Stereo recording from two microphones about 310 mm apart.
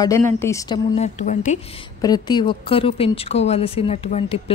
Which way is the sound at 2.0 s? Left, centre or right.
Centre.